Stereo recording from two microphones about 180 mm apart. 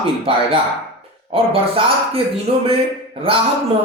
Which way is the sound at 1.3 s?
30° right (ahead or behind).